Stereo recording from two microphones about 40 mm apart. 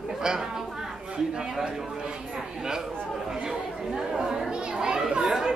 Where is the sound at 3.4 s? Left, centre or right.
Centre.